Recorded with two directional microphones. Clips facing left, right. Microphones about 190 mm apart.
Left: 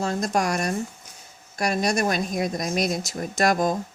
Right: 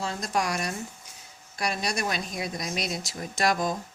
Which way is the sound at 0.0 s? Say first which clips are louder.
Left 5 dB; 45° left (ahead or behind).